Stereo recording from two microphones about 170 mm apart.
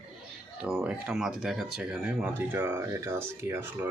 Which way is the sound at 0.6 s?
5° right (ahead or behind).